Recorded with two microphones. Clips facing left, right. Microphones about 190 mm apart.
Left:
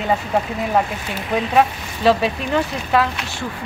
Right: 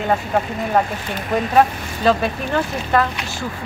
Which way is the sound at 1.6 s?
Centre (ahead or behind).